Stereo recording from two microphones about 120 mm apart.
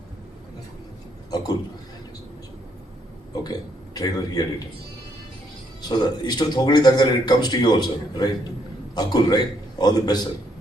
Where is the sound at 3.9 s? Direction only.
30° left (ahead or behind).